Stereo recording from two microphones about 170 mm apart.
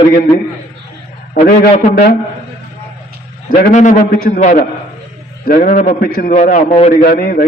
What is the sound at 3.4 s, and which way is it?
A man's voice, 50° left (ahead or behind).